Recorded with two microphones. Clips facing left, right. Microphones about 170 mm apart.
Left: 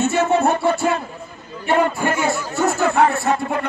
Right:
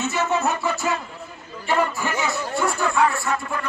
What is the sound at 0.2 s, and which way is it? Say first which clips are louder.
Music: left 4 dB; 50° left (ahead or behind).